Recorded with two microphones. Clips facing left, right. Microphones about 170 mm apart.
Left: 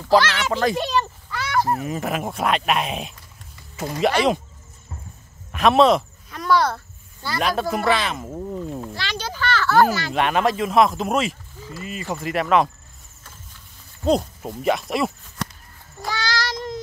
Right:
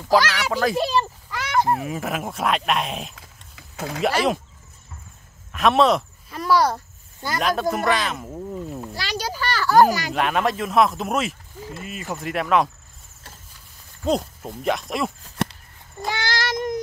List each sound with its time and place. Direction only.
0.1 s speech: 10° right (ahead or behind)
1.3 s a sound: 20° right (ahead or behind)
1.7 s speech: centre (ahead or behind)
3.2 s a sound: 75° right (ahead or behind)
4.0 s speech: centre (ahead or behind)
5.5 s speech: centre (ahead or behind)
7.3 s speech: centre (ahead or behind)
8.8 s a child's voice: 10° right (ahead or behind)
10.1 s speech: centre (ahead or behind)
11.6 s speech: 55° right (ahead or behind)
11.9 s speech: centre (ahead or behind)
14.0 s speech: centre (ahead or behind)
16.1 s child singing: 20° right (ahead or behind)